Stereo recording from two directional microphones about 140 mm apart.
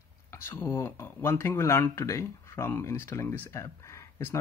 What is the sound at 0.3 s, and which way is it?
Speech, 15° left (ahead or behind).